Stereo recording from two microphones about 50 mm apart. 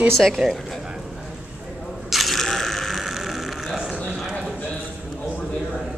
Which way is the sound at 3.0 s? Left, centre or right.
Centre.